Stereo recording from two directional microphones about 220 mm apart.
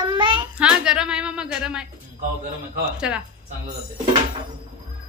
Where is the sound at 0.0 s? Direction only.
20° right (ahead or behind).